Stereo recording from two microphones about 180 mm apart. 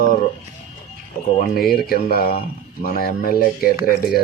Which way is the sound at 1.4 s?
55° left (ahead or behind).